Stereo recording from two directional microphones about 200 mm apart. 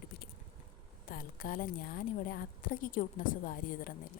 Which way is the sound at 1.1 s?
45° left (ahead or behind).